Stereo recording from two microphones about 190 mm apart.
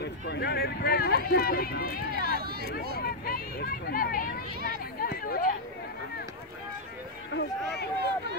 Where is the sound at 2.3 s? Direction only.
55° right (ahead or behind).